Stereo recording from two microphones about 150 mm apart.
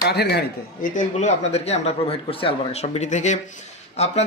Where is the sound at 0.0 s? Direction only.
90° left.